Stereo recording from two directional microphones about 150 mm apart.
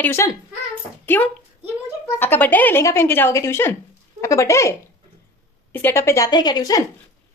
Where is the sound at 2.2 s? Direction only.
10° left (ahead or behind).